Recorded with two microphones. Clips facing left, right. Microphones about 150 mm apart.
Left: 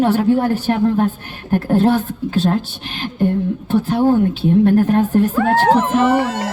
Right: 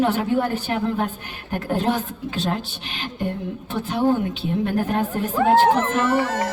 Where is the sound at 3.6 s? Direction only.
40° left (ahead or behind).